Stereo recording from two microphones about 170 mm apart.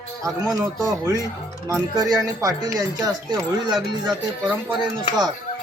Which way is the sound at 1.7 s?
20° right (ahead or behind).